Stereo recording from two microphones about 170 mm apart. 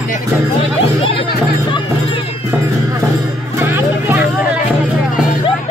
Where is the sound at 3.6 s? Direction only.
15° right (ahead or behind).